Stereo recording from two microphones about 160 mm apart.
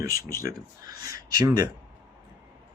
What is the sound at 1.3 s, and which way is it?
Speech, 20° right (ahead or behind).